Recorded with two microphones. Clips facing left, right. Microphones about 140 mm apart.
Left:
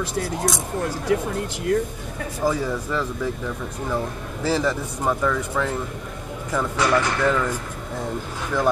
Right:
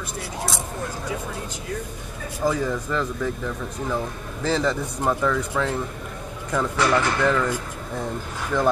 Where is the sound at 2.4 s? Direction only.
10° left (ahead or behind).